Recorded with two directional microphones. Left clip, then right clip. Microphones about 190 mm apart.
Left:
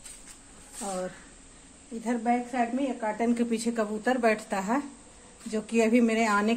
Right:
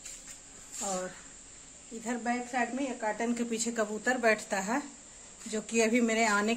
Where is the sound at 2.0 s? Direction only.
5° left (ahead or behind).